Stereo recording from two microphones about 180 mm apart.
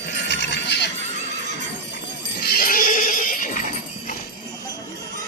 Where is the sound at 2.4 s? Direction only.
55° left (ahead or behind).